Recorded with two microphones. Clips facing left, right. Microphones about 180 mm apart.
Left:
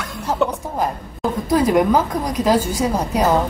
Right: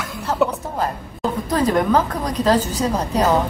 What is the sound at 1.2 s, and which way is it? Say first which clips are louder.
A woman's voice: left 2 dB; 10° left (ahead or behind).